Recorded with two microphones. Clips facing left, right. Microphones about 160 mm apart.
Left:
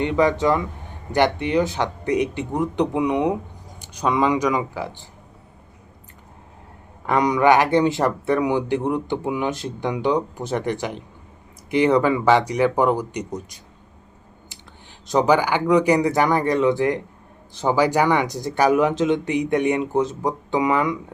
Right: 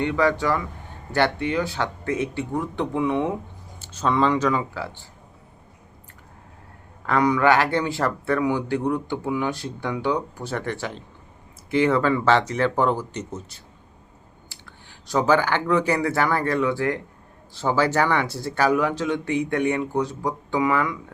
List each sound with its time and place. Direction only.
0.0 s a man's voice: 20° left (ahead or behind)
7.0 s a man's voice: 20° left (ahead or behind)
15.0 s a man's voice: 20° left (ahead or behind)